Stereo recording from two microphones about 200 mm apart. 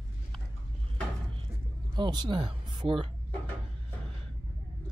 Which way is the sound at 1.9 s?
20° right (ahead or behind).